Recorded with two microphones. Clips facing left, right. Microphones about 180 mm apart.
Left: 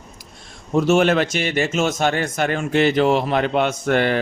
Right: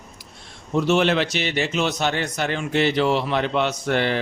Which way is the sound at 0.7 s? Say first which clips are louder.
Left 3 dB; 45° left (ahead or behind).